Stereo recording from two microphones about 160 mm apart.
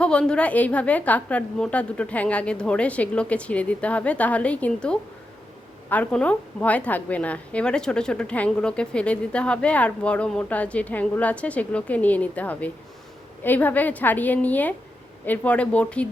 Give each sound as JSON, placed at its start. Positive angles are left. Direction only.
{"t": 0.0, "sound": "a woman's voice", "side_deg": 5}